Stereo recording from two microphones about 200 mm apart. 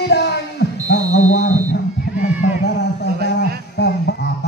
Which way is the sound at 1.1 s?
35° left (ahead or behind).